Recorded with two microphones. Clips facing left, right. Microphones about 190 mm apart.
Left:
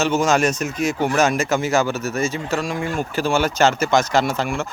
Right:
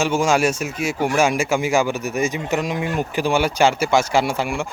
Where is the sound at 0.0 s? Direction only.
10° right (ahead or behind).